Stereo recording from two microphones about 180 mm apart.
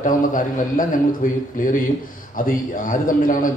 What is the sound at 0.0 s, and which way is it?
A man's voice, 45° left (ahead or behind).